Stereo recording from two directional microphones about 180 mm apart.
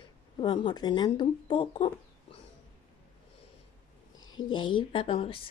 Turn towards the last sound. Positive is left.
turn(degrees=30)  # may be behind; listen again after turning